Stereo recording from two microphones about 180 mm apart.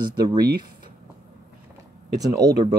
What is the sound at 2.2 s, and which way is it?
Speech, 20° right (ahead or behind).